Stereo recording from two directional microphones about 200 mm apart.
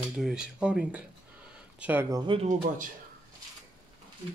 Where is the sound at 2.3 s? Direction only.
35° right (ahead or behind).